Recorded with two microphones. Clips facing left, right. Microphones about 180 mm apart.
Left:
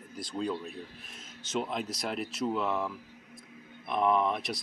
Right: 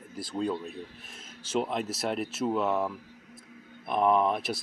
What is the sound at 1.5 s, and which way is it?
Speech, centre (ahead or behind).